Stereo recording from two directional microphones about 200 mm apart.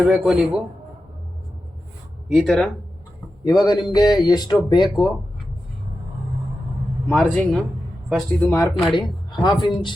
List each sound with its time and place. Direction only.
0.0 s a man's voice: 5° right (ahead or behind)
2.3 s a man's voice: centre (ahead or behind)
3.6 s speech: 20° left (ahead or behind)
7.2 s a man's voice: centre (ahead or behind)
8.1 s speech: 10° left (ahead or behind)
8.8 s a man's voice: centre (ahead or behind)
9.3 s speech: 20° left (ahead or behind)